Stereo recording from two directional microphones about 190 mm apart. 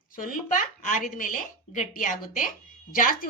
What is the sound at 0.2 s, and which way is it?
Speech, 45° left (ahead or behind).